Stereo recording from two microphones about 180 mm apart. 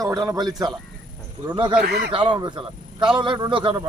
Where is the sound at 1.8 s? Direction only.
60° right (ahead or behind).